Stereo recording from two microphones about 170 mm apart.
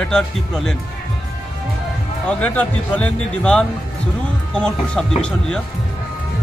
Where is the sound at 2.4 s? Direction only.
10° left (ahead or behind).